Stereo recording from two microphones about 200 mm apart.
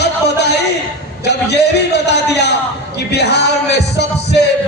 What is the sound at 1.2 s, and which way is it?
Speech, 55° left (ahead or behind).